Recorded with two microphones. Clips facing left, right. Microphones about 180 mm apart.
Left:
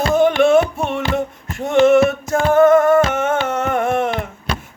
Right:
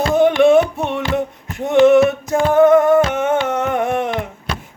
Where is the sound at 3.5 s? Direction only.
15° right (ahead or behind).